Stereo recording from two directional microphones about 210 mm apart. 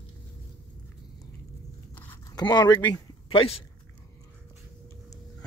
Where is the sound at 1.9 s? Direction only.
10° left (ahead or behind); by 3.6 s 25° left (ahead or behind).